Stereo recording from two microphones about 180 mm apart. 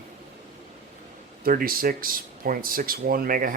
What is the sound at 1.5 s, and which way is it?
Speech, 50° right (ahead or behind).